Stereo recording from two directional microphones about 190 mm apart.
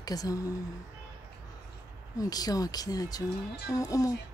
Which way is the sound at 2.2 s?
20° left (ahead or behind).